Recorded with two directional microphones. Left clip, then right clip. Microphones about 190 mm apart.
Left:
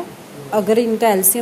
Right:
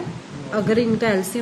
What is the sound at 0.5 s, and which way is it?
Speech, 15° left (ahead or behind).